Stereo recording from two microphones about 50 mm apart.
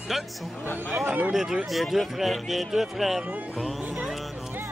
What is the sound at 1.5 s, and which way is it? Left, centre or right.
Speech, centre.